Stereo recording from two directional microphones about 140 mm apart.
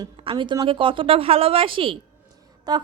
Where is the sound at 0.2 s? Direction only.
35° right (ahead or behind).